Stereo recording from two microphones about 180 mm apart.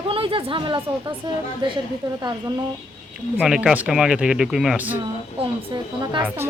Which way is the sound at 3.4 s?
5° right (ahead or behind).